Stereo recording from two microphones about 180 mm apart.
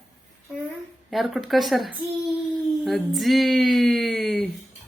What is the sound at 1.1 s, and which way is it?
Speech, centre (ahead or behind).